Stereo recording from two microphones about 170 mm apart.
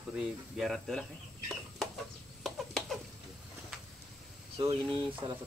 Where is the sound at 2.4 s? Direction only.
Centre (ahead or behind).